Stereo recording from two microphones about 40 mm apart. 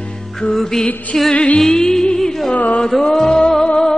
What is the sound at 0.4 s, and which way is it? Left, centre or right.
Music, centre.